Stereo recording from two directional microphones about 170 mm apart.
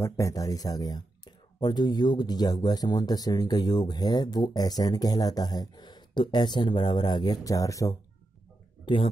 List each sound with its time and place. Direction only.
0.0 s speech: 20° left (ahead or behind)